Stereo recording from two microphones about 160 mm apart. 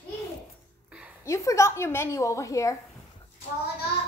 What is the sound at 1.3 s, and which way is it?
A woman's voice, 20° left (ahead or behind).